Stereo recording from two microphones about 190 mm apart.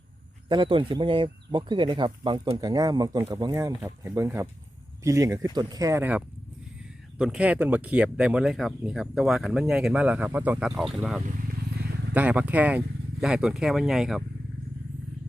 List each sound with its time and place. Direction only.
0.4 s speech: 25° right (ahead or behind); by 14.3 s centre (ahead or behind)